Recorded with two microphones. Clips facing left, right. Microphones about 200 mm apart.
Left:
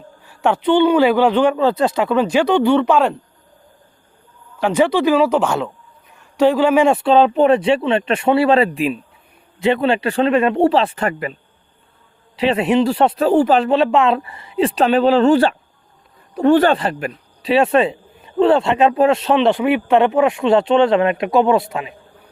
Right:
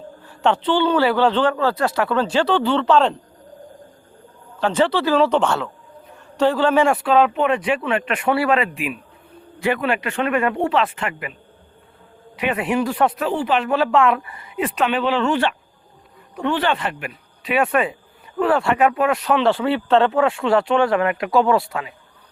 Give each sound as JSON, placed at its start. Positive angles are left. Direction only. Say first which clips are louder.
{"t": 0.3, "sound": "speech", "louder": "left 3 dB", "side_deg": 10}
{"t": 4.6, "sound": "speech", "louder": "left 4 dB", "side_deg": 10}
{"t": 6.9, "sound": "speech", "louder": "left 4 dB", "side_deg": 30}
{"t": 12.4, "sound": "speech", "louder": "left 6 dB", "side_deg": 25}
{"t": 13.3, "sound": "speech", "louder": "left 7 dB", "side_deg": 40}
{"t": 13.7, "sound": "speech", "louder": "left 3 dB", "side_deg": 25}